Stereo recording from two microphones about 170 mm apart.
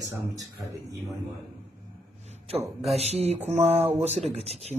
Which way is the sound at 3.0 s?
40° right (ahead or behind).